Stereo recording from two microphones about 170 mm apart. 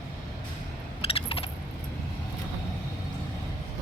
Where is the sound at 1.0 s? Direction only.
35° left (ahead or behind).